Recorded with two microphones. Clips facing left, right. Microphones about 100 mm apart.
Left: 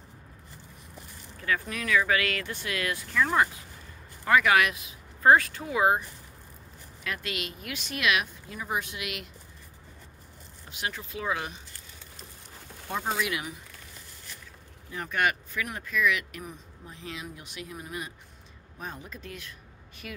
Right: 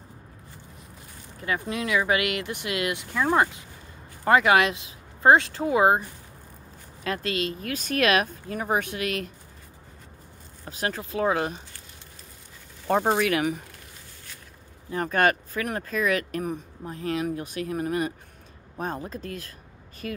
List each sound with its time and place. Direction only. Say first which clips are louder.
1.4 s speech: right 3 dB; 25° right (ahead or behind); by 9.3 s 45° right (ahead or behind)
10.6 s speech: right 6 dB; 45° right (ahead or behind)
12.8 s speech: right 8 dB; 55° right (ahead or behind)
14.9 s speech: right 6 dB; 40° right (ahead or behind)